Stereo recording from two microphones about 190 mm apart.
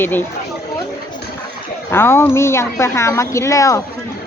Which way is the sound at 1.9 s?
10° left (ahead or behind).